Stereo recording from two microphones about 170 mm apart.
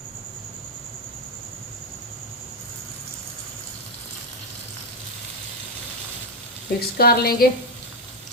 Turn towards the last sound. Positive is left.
turn(degrees=65)  # may be behind; listen again after turning